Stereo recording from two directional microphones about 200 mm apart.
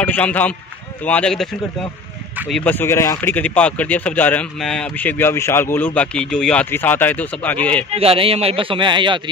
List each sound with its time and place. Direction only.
0.0 s speech: 10° left (ahead or behind)
2.3 s speech: 5° right (ahead or behind)
2.6 s speech: 10° left (ahead or behind)
7.9 s speech: 30° right (ahead or behind)